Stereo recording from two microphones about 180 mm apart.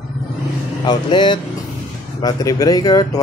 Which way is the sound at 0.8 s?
25° left (ahead or behind).